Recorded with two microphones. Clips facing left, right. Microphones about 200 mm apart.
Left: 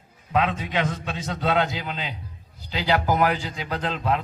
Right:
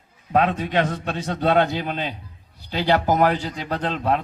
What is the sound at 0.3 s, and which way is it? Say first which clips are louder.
Speech: right 4 dB; 45° right (ahead or behind).